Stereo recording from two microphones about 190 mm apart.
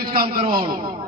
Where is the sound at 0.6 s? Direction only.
25° right (ahead or behind).